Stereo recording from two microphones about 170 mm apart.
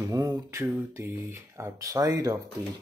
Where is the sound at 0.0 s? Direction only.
20° right (ahead or behind).